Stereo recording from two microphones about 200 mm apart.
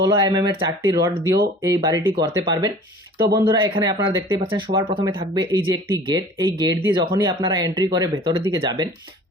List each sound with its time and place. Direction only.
0.0 s speech: 20° right (ahead or behind)